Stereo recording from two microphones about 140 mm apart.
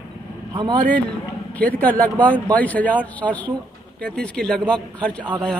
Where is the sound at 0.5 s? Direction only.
35° right (ahead or behind).